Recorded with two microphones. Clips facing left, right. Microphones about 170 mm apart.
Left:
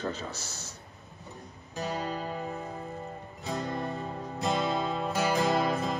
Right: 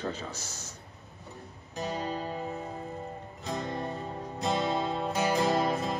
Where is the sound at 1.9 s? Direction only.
30° right (ahead or behind).